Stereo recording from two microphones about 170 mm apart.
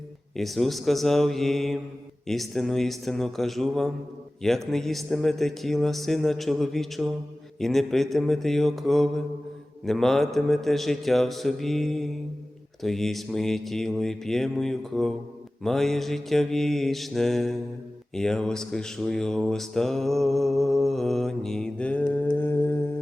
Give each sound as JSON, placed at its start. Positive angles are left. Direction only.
{"t": 0.3, "sound": "mantra", "side_deg": 0}